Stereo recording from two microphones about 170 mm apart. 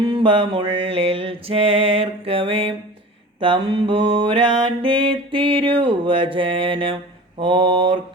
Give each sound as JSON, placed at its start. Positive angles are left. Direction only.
{"t": 0.0, "sound": "mantra", "side_deg": -30}